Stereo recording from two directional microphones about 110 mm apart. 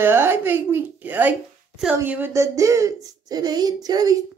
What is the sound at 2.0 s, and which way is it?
Speech, 15° right (ahead or behind).